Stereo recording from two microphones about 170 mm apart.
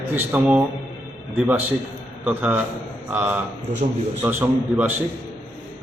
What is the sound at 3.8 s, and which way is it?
Speech, 45° right (ahead or behind).